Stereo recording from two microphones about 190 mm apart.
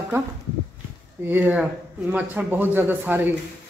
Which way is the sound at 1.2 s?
10° right (ahead or behind).